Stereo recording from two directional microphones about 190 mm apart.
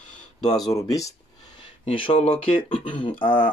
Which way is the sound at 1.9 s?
30° left (ahead or behind).